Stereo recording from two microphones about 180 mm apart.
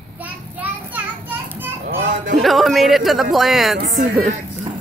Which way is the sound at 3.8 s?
50° right (ahead or behind).